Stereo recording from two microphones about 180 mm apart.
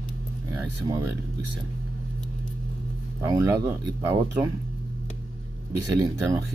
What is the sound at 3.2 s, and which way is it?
Speech, 15° right (ahead or behind).